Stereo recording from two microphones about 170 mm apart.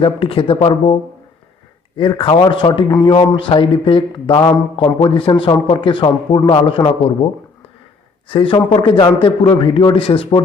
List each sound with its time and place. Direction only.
0.0 s a man's voice: 30° left (ahead or behind)
2.0 s a man's voice: 30° left (ahead or behind)
8.3 s a man's voice: 30° left (ahead or behind)